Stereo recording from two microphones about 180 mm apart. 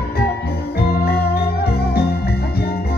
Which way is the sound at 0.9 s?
60° left (ahead or behind).